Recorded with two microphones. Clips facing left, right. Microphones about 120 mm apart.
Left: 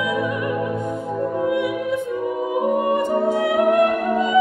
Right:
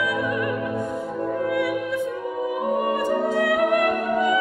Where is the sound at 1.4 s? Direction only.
20° left (ahead or behind).